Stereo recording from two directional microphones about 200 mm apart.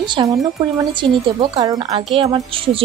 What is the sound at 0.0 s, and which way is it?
Speech, 20° right (ahead or behind).